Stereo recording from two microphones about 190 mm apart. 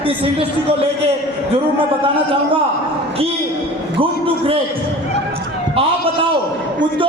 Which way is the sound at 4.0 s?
30° right (ahead or behind).